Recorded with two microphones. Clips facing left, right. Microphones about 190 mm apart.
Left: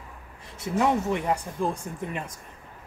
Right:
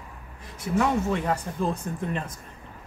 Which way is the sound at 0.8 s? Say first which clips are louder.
Left 1 dB; 15° left (ahead or behind).